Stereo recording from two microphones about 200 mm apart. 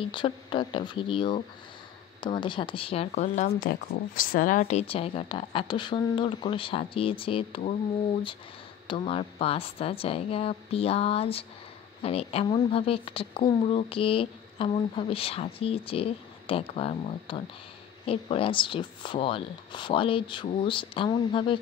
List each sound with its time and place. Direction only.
0.0 s speech: 25° left (ahead or behind)
8.8 s speech: 25° left (ahead or behind)